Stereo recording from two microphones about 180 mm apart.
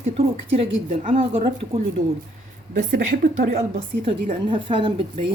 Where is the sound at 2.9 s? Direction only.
50° right (ahead or behind).